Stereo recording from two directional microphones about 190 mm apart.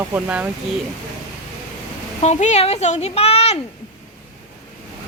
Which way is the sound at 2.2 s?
40° left (ahead or behind).